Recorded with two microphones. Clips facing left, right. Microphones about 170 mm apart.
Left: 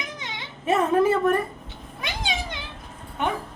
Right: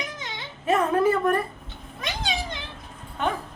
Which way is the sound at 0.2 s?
20° left (ahead or behind).